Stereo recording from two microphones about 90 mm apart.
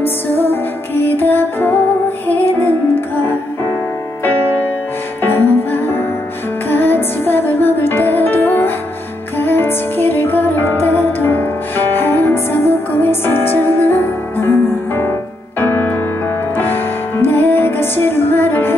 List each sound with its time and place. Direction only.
0.0 s music: 25° left (ahead or behind)
5.2 s music: 25° left (ahead or behind)
15.6 s music: 20° left (ahead or behind)